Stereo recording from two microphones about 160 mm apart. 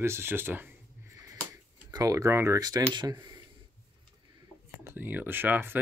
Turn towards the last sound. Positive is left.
turn(degrees=-10)  # may be behind; listen again after turning